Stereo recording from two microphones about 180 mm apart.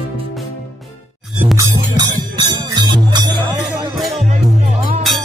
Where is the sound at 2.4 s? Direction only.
25° right (ahead or behind).